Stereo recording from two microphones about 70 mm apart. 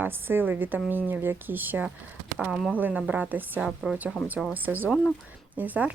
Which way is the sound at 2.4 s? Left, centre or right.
Centre.